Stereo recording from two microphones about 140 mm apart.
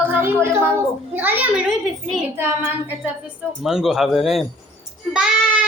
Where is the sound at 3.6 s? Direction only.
5° right (ahead or behind).